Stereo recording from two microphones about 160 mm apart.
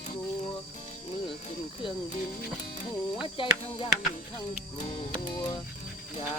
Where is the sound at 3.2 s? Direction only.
30° left (ahead or behind).